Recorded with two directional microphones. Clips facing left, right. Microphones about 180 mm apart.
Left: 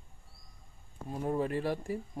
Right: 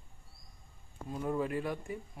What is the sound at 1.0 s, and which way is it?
Speech, 30° left (ahead or behind).